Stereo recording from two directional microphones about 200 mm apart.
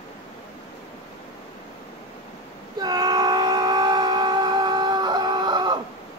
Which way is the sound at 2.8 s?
20° right (ahead or behind).